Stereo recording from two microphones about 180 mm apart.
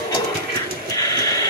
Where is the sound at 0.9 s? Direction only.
20° left (ahead or behind).